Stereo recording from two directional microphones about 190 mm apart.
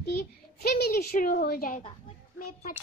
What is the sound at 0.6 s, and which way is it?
A child's voice, 55° left (ahead or behind).